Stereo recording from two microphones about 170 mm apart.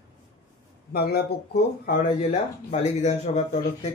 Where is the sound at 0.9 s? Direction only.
70° left (ahead or behind).